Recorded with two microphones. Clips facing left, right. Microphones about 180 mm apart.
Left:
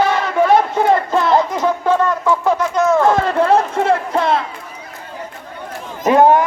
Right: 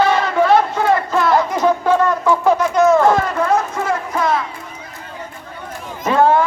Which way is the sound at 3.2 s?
30° left (ahead or behind).